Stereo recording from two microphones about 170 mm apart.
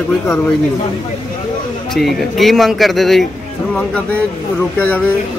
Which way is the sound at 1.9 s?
Centre (ahead or behind).